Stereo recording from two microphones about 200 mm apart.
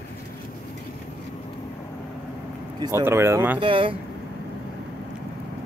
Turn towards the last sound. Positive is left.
turn(degrees=-25)  # may be behind; listen again after turning